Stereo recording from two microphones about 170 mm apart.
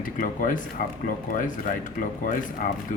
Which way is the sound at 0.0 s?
50° left (ahead or behind).